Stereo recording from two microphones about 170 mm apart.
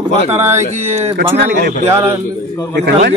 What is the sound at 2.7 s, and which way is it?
Speech, 70° right (ahead or behind).